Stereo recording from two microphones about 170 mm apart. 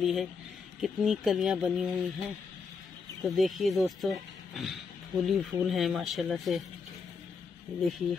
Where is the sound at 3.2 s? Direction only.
Centre (ahead or behind).